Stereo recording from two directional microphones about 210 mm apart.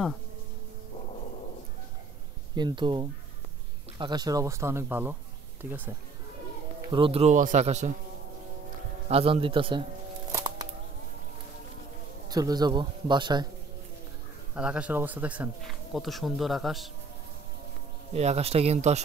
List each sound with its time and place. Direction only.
2.5 s speech: 20° right (ahead or behind)
6.9 s speech: 25° right (ahead or behind)
9.1 s speech: 25° right (ahead or behind)
10.3 s music: 15° right (ahead or behind)
12.3 s speech: 20° right (ahead or behind)
14.5 s speech: 5° right (ahead or behind)
18.1 s speech: 30° right (ahead or behind)